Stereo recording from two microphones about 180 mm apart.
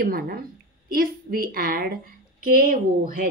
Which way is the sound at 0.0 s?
55° right (ahead or behind).